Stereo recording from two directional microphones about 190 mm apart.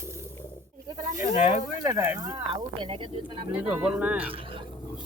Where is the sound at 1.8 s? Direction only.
15° right (ahead or behind).